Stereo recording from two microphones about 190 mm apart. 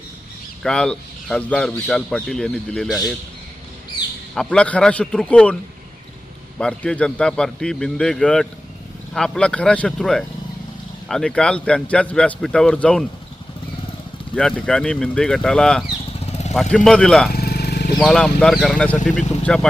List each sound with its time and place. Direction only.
0.6 s speech: 5° left (ahead or behind)
4.4 s a man's voice: 5° left (ahead or behind)
6.6 s speech: 5° left (ahead or behind)
14.3 s speech: 5° left (ahead or behind)
16.2 s vehicle: 35° left (ahead or behind)
16.7 s speech: 5° left (ahead or behind)
17.3 s vehicle: 55° left (ahead or behind)
18.0 s speech: 5° left (ahead or behind)
19.4 s vehicle: 5° left (ahead or behind)